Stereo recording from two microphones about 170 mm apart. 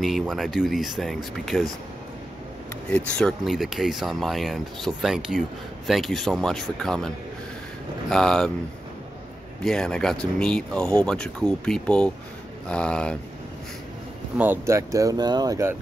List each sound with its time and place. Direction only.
0.0 s speech: centre (ahead or behind)
3.1 s speech: 5° left (ahead or behind)
8.1 s speech: 5° left (ahead or behind)
9.6 s speech: 5° left (ahead or behind)
14.4 s speech: 15° right (ahead or behind)